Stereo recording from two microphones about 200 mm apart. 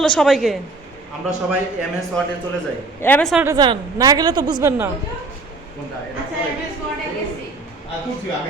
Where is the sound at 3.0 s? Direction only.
10° left (ahead or behind).